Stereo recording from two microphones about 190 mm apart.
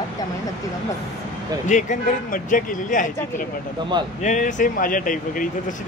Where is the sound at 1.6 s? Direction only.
40° left (ahead or behind).